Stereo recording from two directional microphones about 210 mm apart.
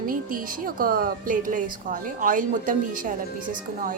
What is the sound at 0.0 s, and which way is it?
A woman's voice, 40° right (ahead or behind).